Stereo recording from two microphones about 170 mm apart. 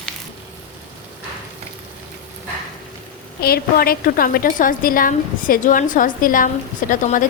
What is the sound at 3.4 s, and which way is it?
A woman's voice, 65° left (ahead or behind).